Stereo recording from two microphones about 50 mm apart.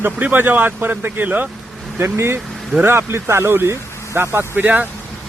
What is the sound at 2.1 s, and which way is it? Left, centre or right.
Speech, right.